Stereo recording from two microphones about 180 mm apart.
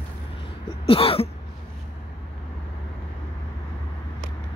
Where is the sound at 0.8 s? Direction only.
30° left (ahead or behind).